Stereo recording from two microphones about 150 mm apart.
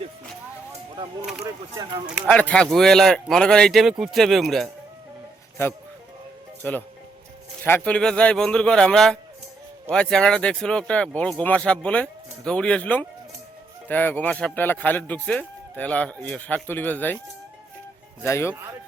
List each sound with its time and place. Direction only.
1.7 s speech: 25° right (ahead or behind)
2.2 s speech: 10° left (ahead or behind)
6.6 s speech: 10° left (ahead or behind)
18.2 s speech: 15° left (ahead or behind)
18.5 s speech: 20° right (ahead or behind)